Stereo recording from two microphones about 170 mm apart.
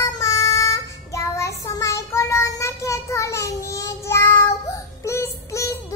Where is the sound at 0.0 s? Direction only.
20° left (ahead or behind).